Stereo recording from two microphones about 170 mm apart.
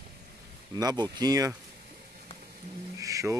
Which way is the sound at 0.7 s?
20° right (ahead or behind).